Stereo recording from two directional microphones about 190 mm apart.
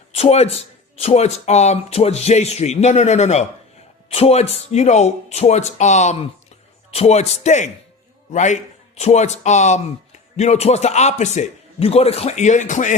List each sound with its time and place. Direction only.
0.1 s a man's voice: 35° left (ahead or behind)